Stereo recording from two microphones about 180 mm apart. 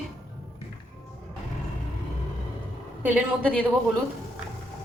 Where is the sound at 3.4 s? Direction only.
5° left (ahead or behind).